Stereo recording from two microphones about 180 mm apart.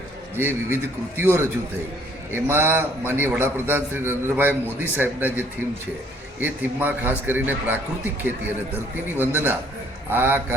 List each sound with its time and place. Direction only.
0.3 s a man's voice: 15° right (ahead or behind)